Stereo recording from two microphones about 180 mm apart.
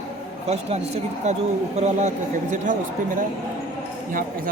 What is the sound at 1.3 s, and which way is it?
Speech, 40° right (ahead or behind).